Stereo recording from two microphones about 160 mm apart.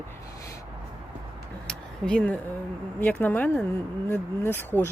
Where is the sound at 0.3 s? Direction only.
20° left (ahead or behind).